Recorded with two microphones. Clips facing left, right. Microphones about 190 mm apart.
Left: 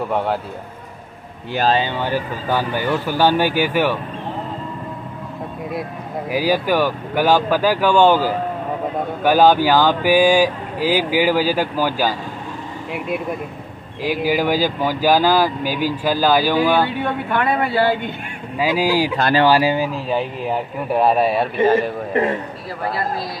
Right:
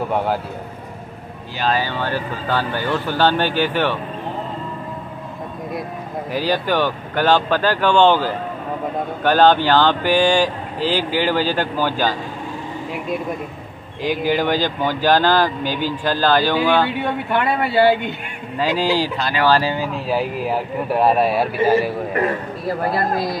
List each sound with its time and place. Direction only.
0.1 s speech: centre (ahead or behind)
1.7 s speech: 20° left (ahead or behind)
6.3 s speech: 10° left (ahead or behind)
14.0 s speech: 5° left (ahead or behind)
17.4 s speech: 45° left (ahead or behind)
18.6 s speech: 10° left (ahead or behind)
19.9 s speech: 5° right (ahead or behind)
22.1 s a man's voice: 25° left (ahead or behind)